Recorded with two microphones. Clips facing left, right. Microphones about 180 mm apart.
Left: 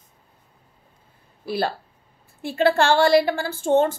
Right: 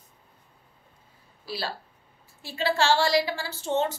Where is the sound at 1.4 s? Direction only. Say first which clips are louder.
Left 9 dB; 55° left (ahead or behind).